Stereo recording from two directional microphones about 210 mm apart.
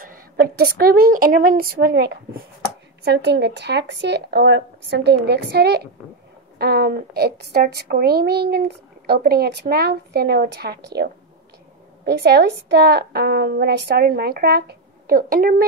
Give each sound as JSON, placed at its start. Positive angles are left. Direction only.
{"t": 0.0, "sound": "a woman's voice", "side_deg": -45}